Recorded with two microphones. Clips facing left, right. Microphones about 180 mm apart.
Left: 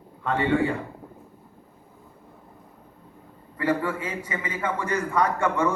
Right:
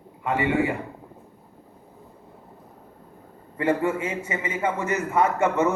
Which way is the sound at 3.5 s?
25° right (ahead or behind).